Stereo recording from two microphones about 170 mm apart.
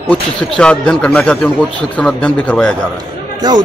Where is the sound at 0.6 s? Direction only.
5° left (ahead or behind).